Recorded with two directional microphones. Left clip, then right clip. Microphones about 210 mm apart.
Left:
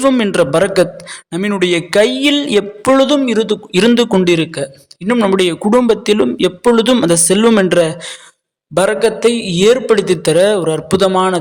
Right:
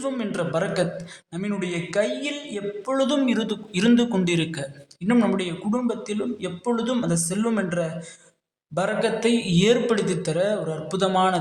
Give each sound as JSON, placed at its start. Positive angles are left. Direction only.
{"t": 0.0, "sound": "a man's voice", "side_deg": 50}